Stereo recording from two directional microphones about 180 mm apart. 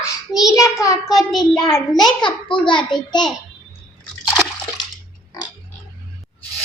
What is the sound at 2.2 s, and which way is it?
A child's voice, 25° left (ahead or behind).